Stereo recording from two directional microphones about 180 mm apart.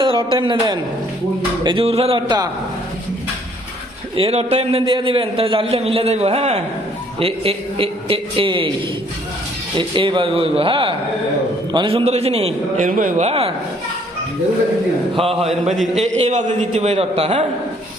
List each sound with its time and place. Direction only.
0.0 s a man's voice: 25° right (ahead or behind)
4.1 s a man's voice: 30° right (ahead or behind)
9.7 s a man's voice: 25° right (ahead or behind)
15.1 s a man's voice: 30° right (ahead or behind)
15.8 s a man's voice: centre (ahead or behind)
16.2 s a man's voice: 40° right (ahead or behind)